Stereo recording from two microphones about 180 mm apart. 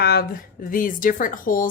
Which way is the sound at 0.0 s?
60° left (ahead or behind).